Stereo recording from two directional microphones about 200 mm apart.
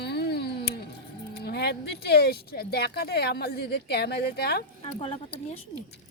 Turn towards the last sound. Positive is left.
turn(degrees=30)  # may be behind; listen again after turning